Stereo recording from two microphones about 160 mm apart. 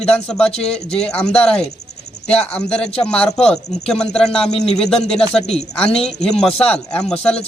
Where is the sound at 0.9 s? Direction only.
5° left (ahead or behind).